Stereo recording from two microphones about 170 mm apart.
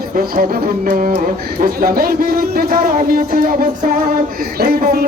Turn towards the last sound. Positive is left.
turn(degrees=-60)  # may be behind; listen again after turning